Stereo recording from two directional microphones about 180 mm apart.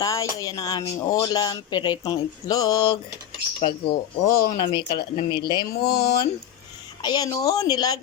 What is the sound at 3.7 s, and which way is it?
Speech, 60° left (ahead or behind).